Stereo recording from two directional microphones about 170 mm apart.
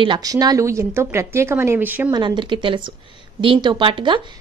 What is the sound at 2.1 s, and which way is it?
Speech, 25° right (ahead or behind).